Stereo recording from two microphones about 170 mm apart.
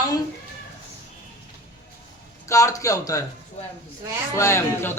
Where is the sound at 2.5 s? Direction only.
20° left (ahead or behind).